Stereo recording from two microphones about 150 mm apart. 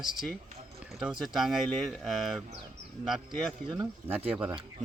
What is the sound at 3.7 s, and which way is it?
Speech, 15° right (ahead or behind).